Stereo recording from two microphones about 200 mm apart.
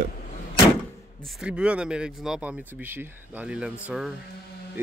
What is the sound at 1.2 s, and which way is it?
Speech, centre (ahead or behind).